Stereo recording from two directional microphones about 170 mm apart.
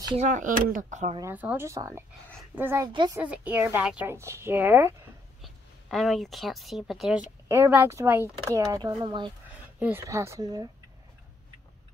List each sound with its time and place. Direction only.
0.1 s speech: 45° right (ahead or behind)
1.2 s speech: 10° right (ahead or behind)
2.9 s a woman's voice: 25° right (ahead or behind)
3.2 s speech: 10° right (ahead or behind)
5.4 s speech: centre (ahead or behind)
7.4 s speech: 15° right (ahead or behind)
9.8 s speech: 10° right (ahead or behind)